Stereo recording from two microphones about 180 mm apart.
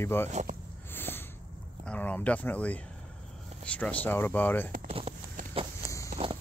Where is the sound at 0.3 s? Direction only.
40° right (ahead or behind).